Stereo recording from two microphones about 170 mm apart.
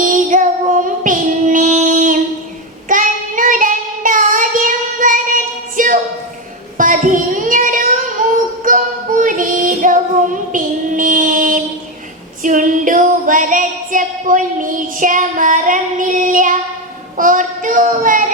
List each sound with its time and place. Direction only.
0.0 s female singing: 50° right (ahead or behind)
1.0 s child singing: 50° right (ahead or behind)
8.2 s music: 50° right (ahead or behind)
10.5 s child singing: 50° right (ahead or behind)
17.2 s a sound: 50° right (ahead or behind)